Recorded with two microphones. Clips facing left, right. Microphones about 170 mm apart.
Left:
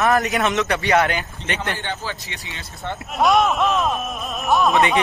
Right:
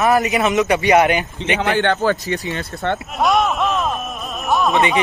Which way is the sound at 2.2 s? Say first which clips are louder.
Right 13 dB; 40° right (ahead or behind).